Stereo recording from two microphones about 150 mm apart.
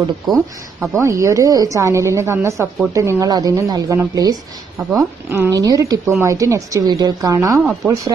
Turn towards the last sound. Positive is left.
turn(degrees=-10)  # may be behind; listen again after turning